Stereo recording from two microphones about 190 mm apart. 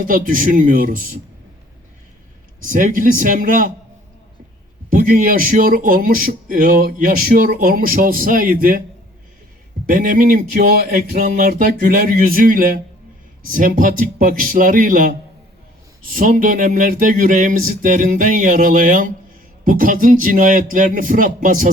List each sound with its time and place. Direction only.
0.0 s speech: 45° right (ahead or behind)
2.6 s speech: 45° right (ahead or behind)
4.9 s speech: 50° right (ahead or behind)
9.8 s speech: 45° right (ahead or behind)